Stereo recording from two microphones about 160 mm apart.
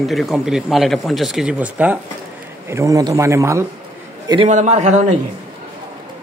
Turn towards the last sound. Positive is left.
turn(degrees=-45)  # may be behind; listen again after turning